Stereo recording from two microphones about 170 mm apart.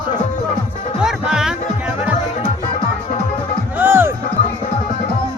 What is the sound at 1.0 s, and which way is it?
Music, 5° right (ahead or behind).